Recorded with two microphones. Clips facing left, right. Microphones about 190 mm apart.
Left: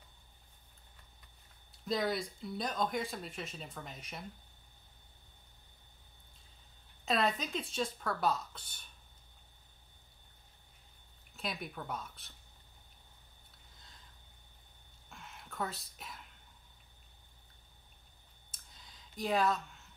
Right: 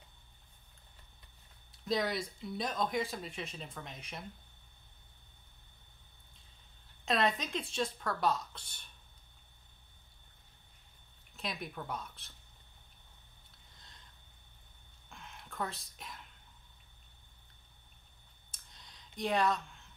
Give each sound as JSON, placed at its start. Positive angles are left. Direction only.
{"t": 1.9, "sound": "speech", "side_deg": 0}
{"t": 7.1, "sound": "speech", "side_deg": 0}
{"t": 11.3, "sound": "speech", "side_deg": 0}
{"t": 15.0, "sound": "a sound", "side_deg": 0}
{"t": 18.5, "sound": "clicking", "side_deg": 5}